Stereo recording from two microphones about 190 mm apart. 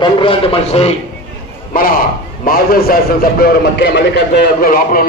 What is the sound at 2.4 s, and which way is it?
A man's voice, 50° left (ahead or behind).